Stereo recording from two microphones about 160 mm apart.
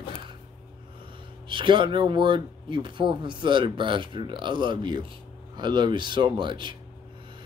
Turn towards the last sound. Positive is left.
turn(degrees=-30)  # may be behind; listen again after turning